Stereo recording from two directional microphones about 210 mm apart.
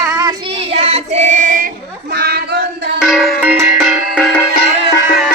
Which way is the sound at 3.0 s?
Centre (ahead or behind).